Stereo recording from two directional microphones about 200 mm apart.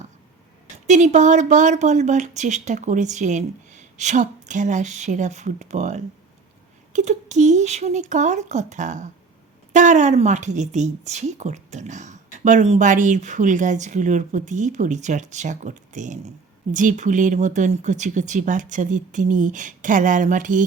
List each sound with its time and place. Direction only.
0.9 s a woman's voice: 35° right (ahead or behind)